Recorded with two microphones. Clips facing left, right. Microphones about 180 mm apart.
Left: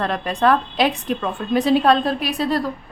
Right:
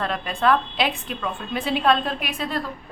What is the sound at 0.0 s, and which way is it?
A woman's voice, 40° left (ahead or behind).